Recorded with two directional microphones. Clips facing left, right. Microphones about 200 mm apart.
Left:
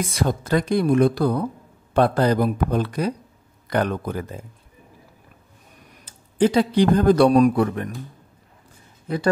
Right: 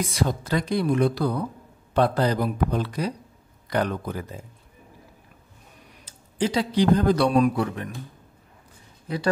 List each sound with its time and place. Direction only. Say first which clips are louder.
0.1 s a woman's voice: left 3 dB; 50° left (ahead or behind)
6.0 s a man's voice: left 7 dB; 55° left (ahead or behind)